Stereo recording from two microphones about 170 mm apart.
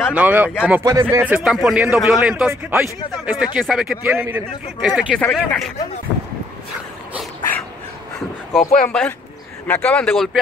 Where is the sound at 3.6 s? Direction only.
Centre (ahead or behind).